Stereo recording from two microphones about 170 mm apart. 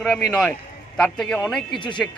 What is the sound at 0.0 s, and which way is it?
Speech, centre (ahead or behind).